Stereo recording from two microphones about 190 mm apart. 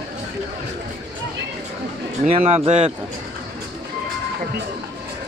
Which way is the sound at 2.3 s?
35° right (ahead or behind).